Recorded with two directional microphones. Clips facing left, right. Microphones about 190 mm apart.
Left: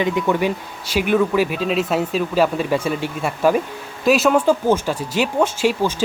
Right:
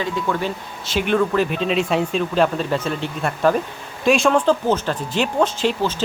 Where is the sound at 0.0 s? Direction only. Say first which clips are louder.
Left 4 dB; 20° left (ahead or behind).